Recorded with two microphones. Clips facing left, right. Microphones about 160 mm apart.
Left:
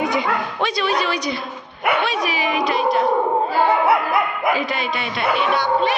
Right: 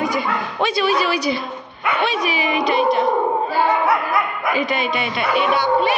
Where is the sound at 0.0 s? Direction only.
20° left (ahead or behind).